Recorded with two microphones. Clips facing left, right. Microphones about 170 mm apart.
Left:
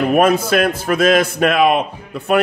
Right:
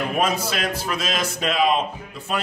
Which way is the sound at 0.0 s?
60° left (ahead or behind).